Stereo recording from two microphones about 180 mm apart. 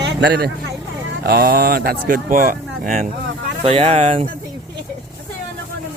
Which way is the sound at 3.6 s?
35° right (ahead or behind).